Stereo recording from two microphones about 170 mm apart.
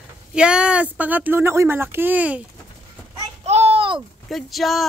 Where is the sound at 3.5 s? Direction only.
35° right (ahead or behind).